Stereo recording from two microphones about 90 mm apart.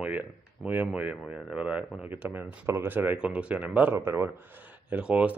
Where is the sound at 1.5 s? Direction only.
15° right (ahead or behind).